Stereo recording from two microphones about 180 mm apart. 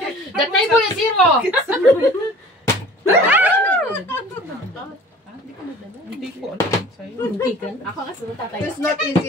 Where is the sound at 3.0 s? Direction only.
10° right (ahead or behind).